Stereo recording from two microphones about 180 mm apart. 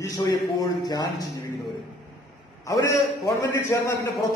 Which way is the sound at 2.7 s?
20° left (ahead or behind).